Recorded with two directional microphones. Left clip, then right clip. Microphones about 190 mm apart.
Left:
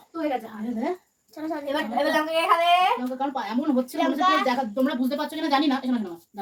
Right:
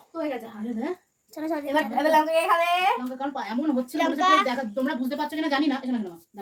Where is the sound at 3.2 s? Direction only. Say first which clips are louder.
Left 2 dB; 5° left (ahead or behind).